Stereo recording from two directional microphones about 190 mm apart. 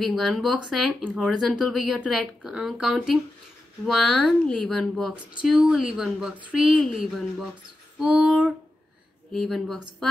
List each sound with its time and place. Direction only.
0.0 s speech: centre (ahead or behind)